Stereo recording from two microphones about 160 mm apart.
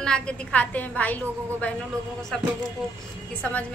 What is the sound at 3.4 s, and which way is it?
Speech, 10° left (ahead or behind).